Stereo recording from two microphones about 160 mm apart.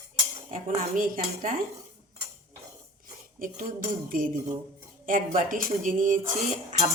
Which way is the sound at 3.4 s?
60° right (ahead or behind).